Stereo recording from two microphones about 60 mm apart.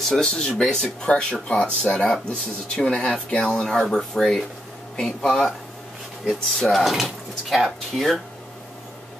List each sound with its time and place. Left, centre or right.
0.1 s speech: centre